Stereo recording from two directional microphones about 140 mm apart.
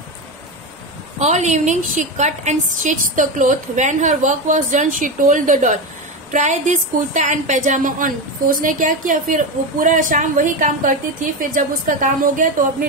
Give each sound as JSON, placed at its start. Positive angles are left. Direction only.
{"t": 1.2, "sound": "a woman's voice", "side_deg": -55}